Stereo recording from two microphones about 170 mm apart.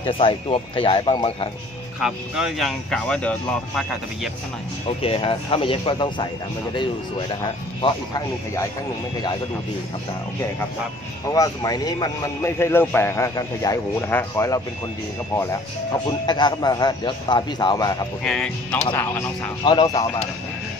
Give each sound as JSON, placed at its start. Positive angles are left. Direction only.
{"t": 0.0, "sound": "speech", "side_deg": 30}
{"t": 2.0, "sound": "speech", "side_deg": -5}
{"t": 5.0, "sound": "a man's voice", "side_deg": 35}
{"t": 11.2, "sound": "a man's voice", "side_deg": 20}
{"t": 16.1, "sound": "a man's voice", "side_deg": 25}
{"t": 18.2, "sound": "speech", "side_deg": 5}
{"t": 19.6, "sound": "a man's voice", "side_deg": 25}